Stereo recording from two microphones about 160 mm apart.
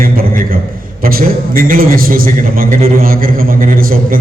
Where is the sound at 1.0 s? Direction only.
65° right (ahead or behind).